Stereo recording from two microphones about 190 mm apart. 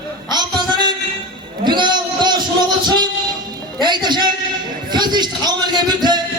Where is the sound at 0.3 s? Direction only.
20° right (ahead or behind).